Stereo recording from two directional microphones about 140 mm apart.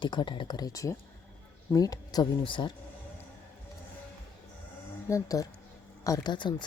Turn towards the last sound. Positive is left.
turn(degrees=35)  # may be behind; listen again after turning